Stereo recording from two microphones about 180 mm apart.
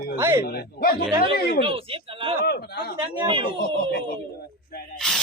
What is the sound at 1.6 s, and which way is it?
Speech, 30° right (ahead or behind).